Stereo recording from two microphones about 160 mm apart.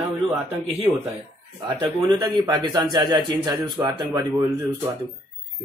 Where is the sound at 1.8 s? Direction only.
30° right (ahead or behind).